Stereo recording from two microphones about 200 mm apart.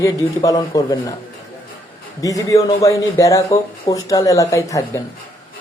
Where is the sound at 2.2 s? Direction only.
15° left (ahead or behind).